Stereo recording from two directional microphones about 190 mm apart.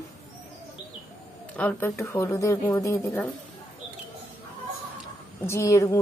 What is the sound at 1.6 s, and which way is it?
Speech, 10° left (ahead or behind).